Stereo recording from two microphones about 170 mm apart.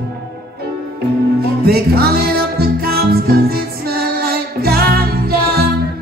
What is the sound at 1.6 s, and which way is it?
Music, 65° right (ahead or behind).